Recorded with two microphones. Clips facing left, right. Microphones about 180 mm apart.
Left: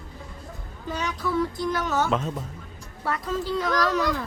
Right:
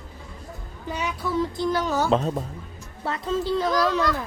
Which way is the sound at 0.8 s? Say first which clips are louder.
Right 1 dB; 10° right (ahead or behind).